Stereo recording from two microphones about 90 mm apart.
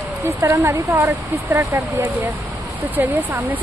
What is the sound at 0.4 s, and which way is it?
Speech, 35° right (ahead or behind).